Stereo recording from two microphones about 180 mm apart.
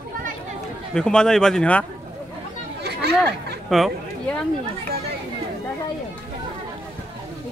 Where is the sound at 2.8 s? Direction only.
65° right (ahead or behind).